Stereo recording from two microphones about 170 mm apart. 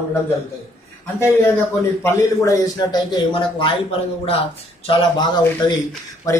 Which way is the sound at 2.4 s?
20° left (ahead or behind).